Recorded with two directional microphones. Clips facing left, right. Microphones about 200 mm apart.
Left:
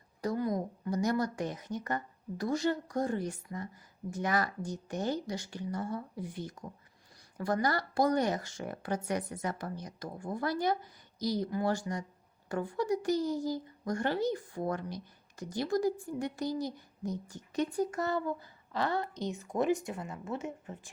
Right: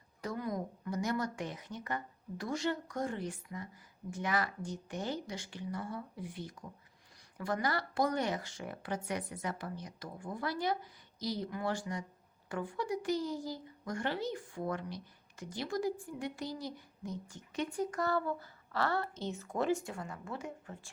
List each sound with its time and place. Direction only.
0.2 s a woman's voice: 35° left (ahead or behind)
17.9 s speech: 20° left (ahead or behind)